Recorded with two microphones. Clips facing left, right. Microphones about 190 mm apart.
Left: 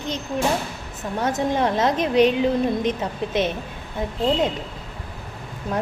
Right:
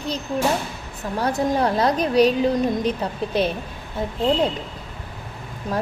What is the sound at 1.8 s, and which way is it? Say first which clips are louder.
A woman's voice: even; 35° right (ahead or behind).